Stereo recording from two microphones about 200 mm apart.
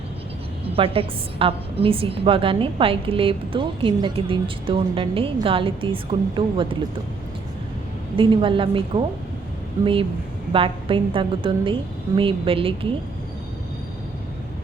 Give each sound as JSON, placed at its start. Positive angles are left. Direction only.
{"t": 0.7, "sound": "a woman's voice", "side_deg": -30}
{"t": 8.1, "sound": "a woman's voice", "side_deg": -25}